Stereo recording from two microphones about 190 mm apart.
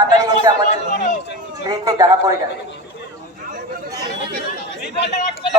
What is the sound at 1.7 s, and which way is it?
Speech, 20° right (ahead or behind).